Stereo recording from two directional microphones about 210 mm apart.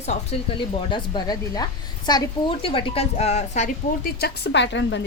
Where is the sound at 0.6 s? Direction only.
25° left (ahead or behind); by 5.0 s 60° left (ahead or behind).